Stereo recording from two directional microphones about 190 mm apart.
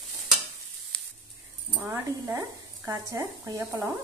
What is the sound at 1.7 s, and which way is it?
Speech, 10° right (ahead or behind).